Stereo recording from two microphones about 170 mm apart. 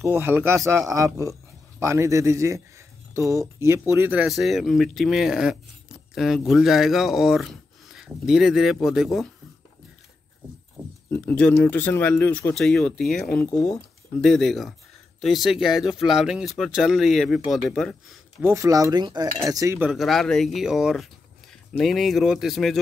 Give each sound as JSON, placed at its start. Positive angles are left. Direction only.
{"t": 0.0, "sound": "speech", "side_deg": -10}
{"t": 11.1, "sound": "speech", "side_deg": 10}
{"t": 18.4, "sound": "cutlery", "side_deg": -15}
{"t": 19.9, "sound": "speech", "side_deg": 0}